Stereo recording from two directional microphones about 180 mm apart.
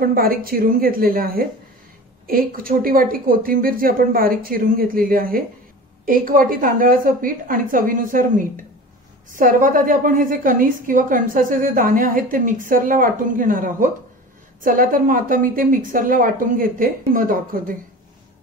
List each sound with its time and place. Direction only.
0.0 s a woman's voice: 55° right (ahead or behind)